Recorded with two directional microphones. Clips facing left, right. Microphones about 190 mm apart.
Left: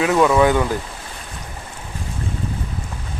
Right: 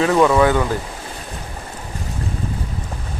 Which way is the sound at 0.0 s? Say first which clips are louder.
Right 1 dB; 5° left (ahead or behind).